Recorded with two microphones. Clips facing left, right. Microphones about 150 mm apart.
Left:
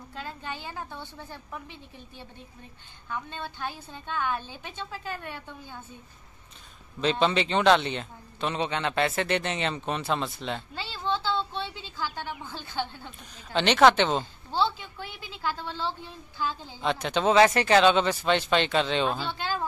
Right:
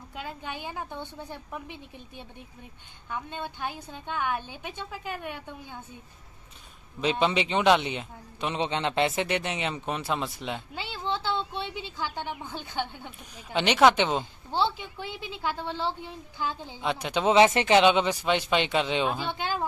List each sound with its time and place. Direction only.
0.1 s speech: 15° right (ahead or behind)
7.0 s speech: 10° right (ahead or behind)
8.6 s speech: 25° right (ahead or behind)